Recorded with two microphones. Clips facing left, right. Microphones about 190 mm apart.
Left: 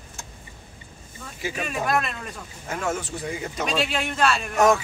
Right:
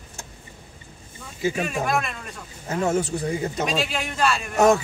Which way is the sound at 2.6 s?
35° right (ahead or behind).